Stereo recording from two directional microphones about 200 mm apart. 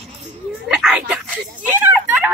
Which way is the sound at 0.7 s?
5° right (ahead or behind).